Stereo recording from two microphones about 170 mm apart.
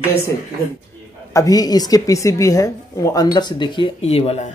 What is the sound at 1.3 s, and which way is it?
Speech, 20° left (ahead or behind).